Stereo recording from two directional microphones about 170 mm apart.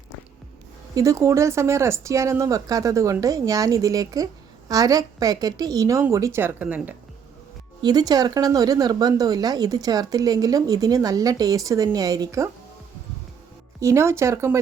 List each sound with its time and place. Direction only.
0.9 s speech: 20° right (ahead or behind)
7.8 s speech: 25° right (ahead or behind)
13.7 s speech: 15° right (ahead or behind)